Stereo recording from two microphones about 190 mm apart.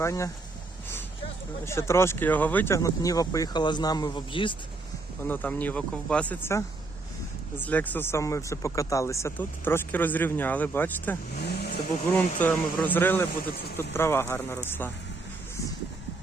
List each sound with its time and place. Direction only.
0.0 s speech: 15° left (ahead or behind)
1.6 s speech: 15° left (ahead or behind)
5.2 s speech: 10° left (ahead or behind)
11.3 s vehicle: 55° left (ahead or behind)
12.4 s speech: 10° left (ahead or behind)